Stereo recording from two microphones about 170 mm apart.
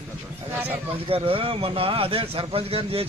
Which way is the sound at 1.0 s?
35° right (ahead or behind).